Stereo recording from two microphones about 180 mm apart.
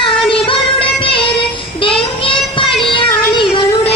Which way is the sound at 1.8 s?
30° left (ahead or behind).